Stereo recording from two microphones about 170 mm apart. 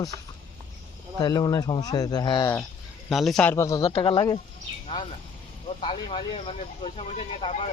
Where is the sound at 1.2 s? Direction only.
25° left (ahead or behind).